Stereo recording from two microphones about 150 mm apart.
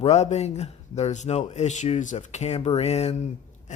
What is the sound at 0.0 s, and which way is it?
Speech, 50° left (ahead or behind).